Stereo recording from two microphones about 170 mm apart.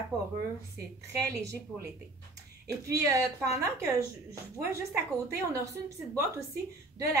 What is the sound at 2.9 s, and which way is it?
A woman's voice, 20° right (ahead or behind).